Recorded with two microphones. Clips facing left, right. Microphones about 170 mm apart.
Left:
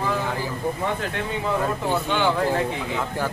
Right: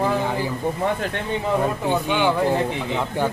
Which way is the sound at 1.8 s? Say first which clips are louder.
Right 2 dB; 15° right (ahead or behind).